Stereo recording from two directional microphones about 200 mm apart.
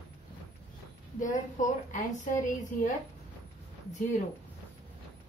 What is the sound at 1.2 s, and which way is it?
A woman's voice, 40° left (ahead or behind).